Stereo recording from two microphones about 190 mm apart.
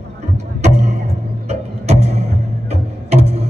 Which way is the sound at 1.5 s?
35° right (ahead or behind).